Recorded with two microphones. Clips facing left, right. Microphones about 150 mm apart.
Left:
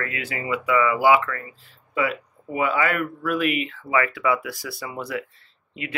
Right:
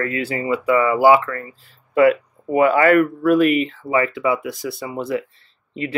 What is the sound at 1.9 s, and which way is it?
Speech, 55° right (ahead or behind).